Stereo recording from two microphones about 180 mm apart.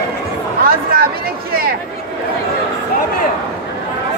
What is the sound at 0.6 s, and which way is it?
Chatter, 55° right (ahead or behind).